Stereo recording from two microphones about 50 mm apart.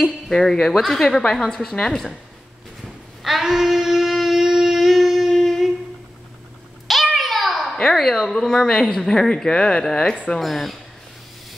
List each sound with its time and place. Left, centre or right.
0.0 s a woman's voice: centre
3.2 s a sound: centre
6.9 s a sound: centre
7.9 s a woman's voice: centre
10.1 s speech: left
10.4 s speech: centre